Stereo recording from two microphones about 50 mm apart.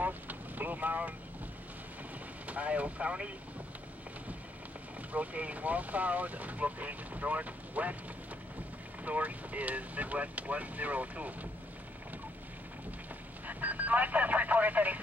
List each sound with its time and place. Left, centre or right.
0.0 s vehicle: right
2.4 s speech: right
5.1 s speech: right
9.0 s speech: right
13.5 s speech: right